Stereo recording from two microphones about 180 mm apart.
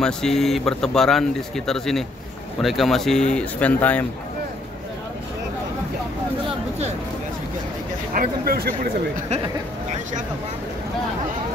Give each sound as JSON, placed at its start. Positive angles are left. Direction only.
{"t": 0.0, "sound": "speech", "side_deg": 5}
{"t": 8.1, "sound": "speech", "side_deg": -55}